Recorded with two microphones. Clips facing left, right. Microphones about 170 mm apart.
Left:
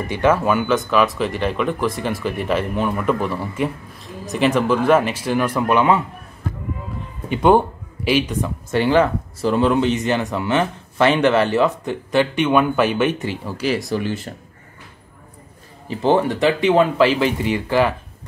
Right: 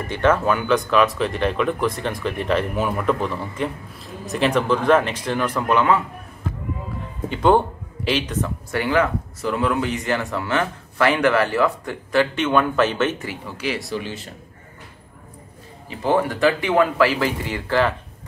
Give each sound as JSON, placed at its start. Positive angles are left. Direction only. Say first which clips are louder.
{"t": 0.0, "sound": "speech", "louder": "left 1 dB", "side_deg": 10}
{"t": 3.1, "sound": "speech", "louder": "left 2 dB", "side_deg": 10}
{"t": 7.2, "sound": "speech", "louder": "left 2 dB", "side_deg": 15}
{"t": 8.7, "sound": "speech", "louder": "left 4 dB", "side_deg": 30}
{"t": 13.6, "sound": "speech", "louder": "left 5 dB", "side_deg": 40}
{"t": 16.0, "sound": "speech", "louder": "left 2 dB", "side_deg": 25}